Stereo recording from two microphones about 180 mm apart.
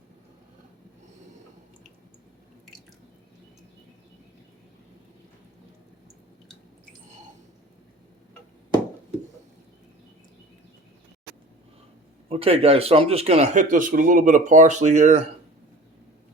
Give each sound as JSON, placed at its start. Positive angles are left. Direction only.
{"t": 12.3, "sound": "speech", "side_deg": -30}